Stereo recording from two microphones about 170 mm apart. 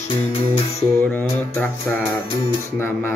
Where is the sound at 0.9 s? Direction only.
10° left (ahead or behind).